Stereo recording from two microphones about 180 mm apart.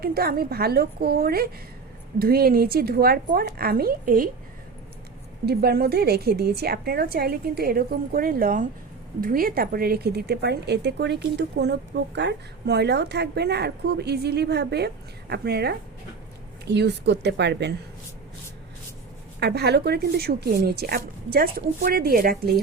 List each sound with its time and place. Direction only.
0.0 s a woman's voice: 60° right (ahead or behind)
5.5 s a woman's voice: 60° right (ahead or behind)
19.4 s a woman's voice: 65° right (ahead or behind)